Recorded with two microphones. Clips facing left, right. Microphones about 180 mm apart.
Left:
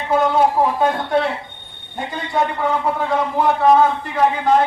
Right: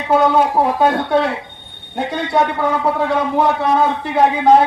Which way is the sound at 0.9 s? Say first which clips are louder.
Right 3 dB; 75° right (ahead or behind).